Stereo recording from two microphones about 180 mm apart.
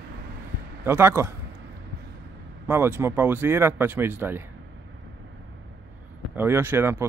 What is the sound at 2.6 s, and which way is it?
Speech, 10° right (ahead or behind).